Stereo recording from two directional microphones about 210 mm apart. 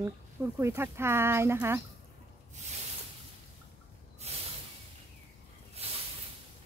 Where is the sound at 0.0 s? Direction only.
10° right (ahead or behind).